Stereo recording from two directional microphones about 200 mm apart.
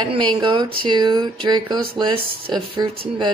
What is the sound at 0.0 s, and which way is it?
Speech, 25° right (ahead or behind).